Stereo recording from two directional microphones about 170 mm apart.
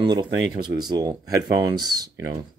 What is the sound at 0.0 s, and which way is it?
Speech, 25° right (ahead or behind).